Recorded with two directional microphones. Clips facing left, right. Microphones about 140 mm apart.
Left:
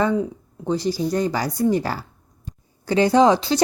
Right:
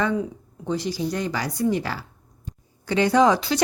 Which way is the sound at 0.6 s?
35° left (ahead or behind).